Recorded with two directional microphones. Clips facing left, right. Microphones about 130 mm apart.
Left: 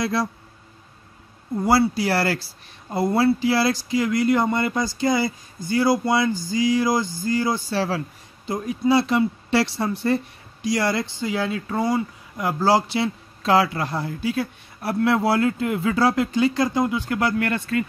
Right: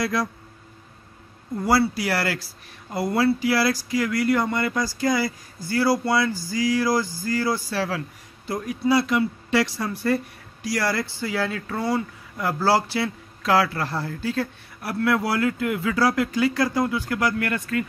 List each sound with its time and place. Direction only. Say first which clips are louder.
0.0 s speech: left 1 dB; 30° left (ahead or behind)
1.6 s speech: left 2 dB; 30° left (ahead or behind)
14.8 s speech: left 2 dB; 25° left (ahead or behind)